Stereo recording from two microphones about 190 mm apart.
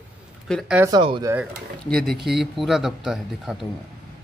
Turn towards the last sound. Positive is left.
turn(degrees=0)  # may be behind; listen again after turning